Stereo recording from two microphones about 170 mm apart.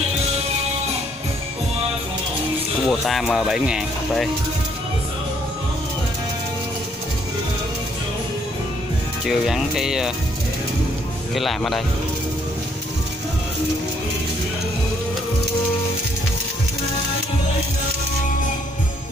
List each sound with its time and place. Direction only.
2.9 s speech: centre (ahead or behind)
9.2 s speech: centre (ahead or behind)
11.3 s speech: centre (ahead or behind)